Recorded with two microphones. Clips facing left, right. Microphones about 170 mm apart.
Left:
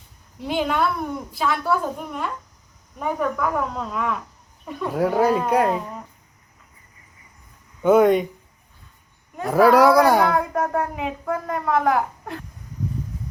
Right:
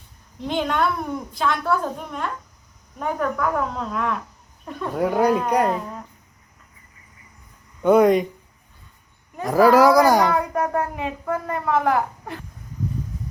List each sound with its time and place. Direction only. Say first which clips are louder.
0.4 s speech: even; 5° left (ahead or behind)
7.8 s speech: even; centre (ahead or behind)
9.3 s speech: even; centre (ahead or behind)